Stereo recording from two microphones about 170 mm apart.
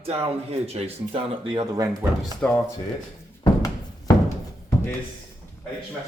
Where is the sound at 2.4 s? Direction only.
5° left (ahead or behind).